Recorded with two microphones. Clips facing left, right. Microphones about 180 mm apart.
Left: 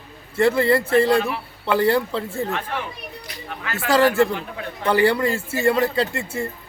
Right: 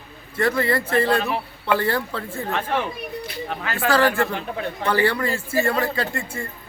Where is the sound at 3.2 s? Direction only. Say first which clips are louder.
Right 1 dB; 30° right (ahead or behind).